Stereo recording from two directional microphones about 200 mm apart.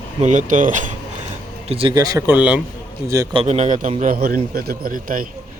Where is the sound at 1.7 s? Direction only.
25° right (ahead or behind).